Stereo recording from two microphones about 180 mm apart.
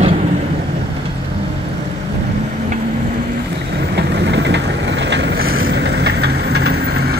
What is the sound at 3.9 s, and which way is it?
Vehicle, 70° right (ahead or behind).